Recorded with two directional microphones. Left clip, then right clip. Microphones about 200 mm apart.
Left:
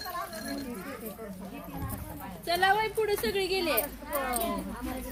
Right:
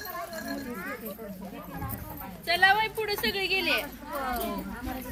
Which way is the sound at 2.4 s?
50° left (ahead or behind).